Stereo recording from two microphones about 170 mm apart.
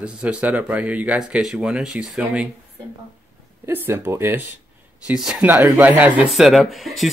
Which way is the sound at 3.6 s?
15° right (ahead or behind).